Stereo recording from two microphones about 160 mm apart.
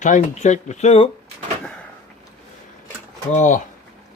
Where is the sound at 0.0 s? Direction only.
50° left (ahead or behind).